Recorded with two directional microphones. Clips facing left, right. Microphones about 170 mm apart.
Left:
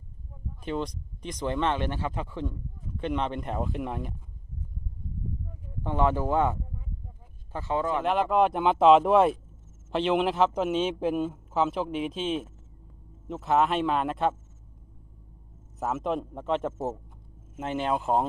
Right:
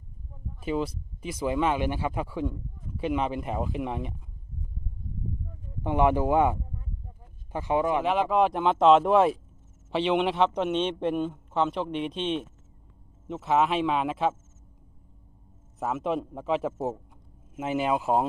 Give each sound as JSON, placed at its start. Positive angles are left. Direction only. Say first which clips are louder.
{"t": 0.6, "sound": "a man's voice", "louder": "right 3 dB", "side_deg": -5}
{"t": 5.8, "sound": "speech", "louder": "right 3 dB", "side_deg": -15}
{"t": 8.0, "sound": "a man's voice", "louder": "even", "side_deg": 0}
{"t": 15.8, "sound": "a man's voice", "louder": "right 1 dB", "side_deg": 0}